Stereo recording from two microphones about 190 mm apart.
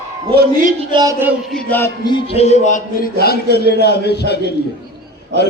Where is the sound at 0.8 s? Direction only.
25° right (ahead or behind).